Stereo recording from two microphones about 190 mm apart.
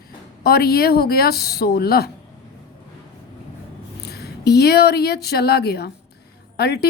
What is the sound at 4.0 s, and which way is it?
Speech, 55° left (ahead or behind).